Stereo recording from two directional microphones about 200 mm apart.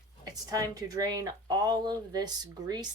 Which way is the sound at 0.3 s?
20° right (ahead or behind).